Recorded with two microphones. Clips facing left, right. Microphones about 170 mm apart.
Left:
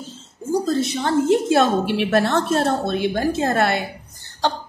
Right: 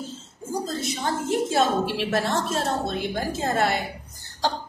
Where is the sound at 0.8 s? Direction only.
70° left (ahead or behind).